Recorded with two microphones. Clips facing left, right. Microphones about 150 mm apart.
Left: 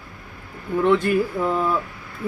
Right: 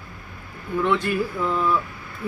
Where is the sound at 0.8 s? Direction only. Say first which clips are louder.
Left 4 dB; 45° left (ahead or behind).